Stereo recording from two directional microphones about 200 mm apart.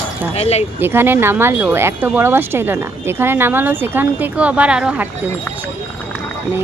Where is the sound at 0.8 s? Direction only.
10° right (ahead or behind).